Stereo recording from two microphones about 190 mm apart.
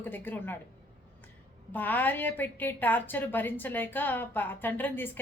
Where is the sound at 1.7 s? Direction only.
10° left (ahead or behind).